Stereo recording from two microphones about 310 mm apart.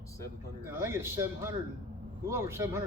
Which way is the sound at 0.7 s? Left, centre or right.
Centre.